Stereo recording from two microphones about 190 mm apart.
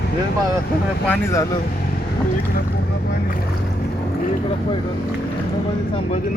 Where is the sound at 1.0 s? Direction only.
10° left (ahead or behind).